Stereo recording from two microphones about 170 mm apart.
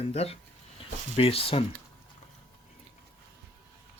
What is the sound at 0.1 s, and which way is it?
Speech, 35° left (ahead or behind).